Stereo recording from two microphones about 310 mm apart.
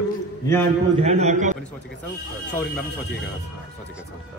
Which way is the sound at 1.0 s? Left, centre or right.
Right.